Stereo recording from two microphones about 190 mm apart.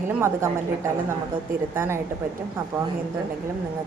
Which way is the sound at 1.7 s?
15° right (ahead or behind).